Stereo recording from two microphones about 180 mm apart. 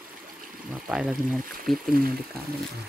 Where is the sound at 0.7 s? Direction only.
5° right (ahead or behind).